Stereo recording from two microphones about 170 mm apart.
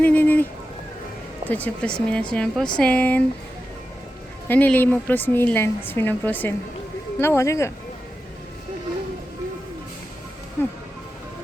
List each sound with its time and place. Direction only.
0.0 s a sound: 10° left (ahead or behind)
1.5 s a woman's voice: 10° left (ahead or behind)
4.4 s a woman's voice: 10° left (ahead or behind)
10.6 s a woman's voice: 15° left (ahead or behind)